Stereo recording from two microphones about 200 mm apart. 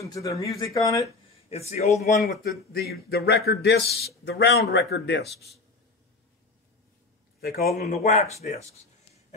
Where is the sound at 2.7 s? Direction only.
50° left (ahead or behind).